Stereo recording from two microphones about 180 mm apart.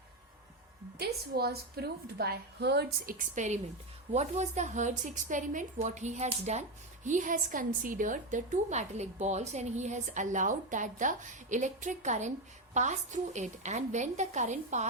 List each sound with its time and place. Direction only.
0.9 s a woman's voice: 60° right (ahead or behind); by 14.8 s 40° right (ahead or behind)